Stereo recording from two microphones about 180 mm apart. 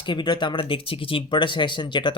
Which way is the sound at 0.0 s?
25° left (ahead or behind).